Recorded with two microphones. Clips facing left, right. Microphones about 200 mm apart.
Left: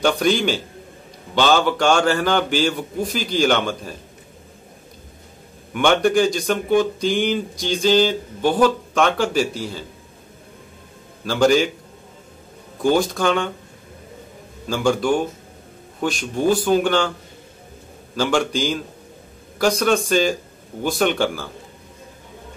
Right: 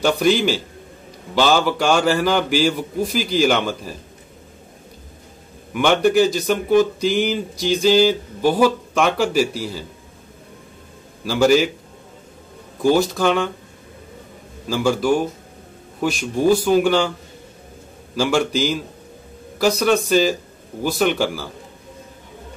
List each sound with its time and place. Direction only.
0.0 s speech: 5° right (ahead or behind)
5.7 s speech: 5° right (ahead or behind)
11.2 s speech: 5° right (ahead or behind)
12.8 s speech: 5° right (ahead or behind)
14.7 s speech: 5° right (ahead or behind)
18.1 s speech: 10° right (ahead or behind)